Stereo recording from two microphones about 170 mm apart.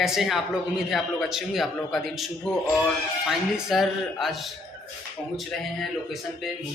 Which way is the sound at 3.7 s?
Centre (ahead or behind).